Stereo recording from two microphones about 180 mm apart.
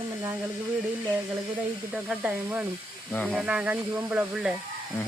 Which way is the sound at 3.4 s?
5° right (ahead or behind).